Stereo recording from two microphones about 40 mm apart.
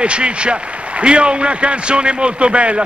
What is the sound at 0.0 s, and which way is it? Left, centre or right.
A man's voice, right.